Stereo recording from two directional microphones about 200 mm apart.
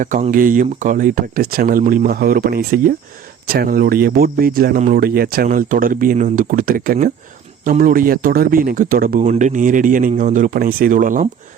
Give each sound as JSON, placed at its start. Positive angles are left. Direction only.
{"t": 0.0, "sound": "speech", "side_deg": -40}